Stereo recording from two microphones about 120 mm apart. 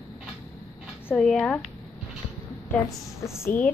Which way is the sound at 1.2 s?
5° left (ahead or behind).